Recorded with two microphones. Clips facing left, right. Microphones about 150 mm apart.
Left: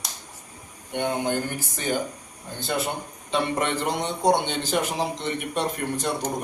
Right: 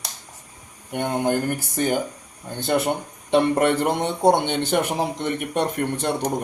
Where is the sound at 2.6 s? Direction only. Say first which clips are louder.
Right 6 dB; 55° right (ahead or behind).